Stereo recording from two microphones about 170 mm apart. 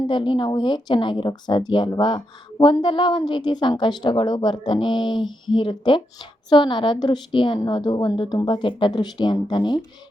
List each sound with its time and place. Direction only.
0.1 s speech: 30° left (ahead or behind)